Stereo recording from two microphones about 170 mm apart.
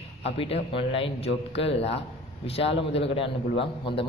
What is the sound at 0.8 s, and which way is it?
Speech, 35° left (ahead or behind).